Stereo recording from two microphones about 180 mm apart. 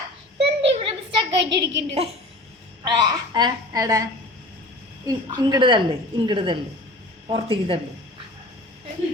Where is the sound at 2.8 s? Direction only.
25° right (ahead or behind).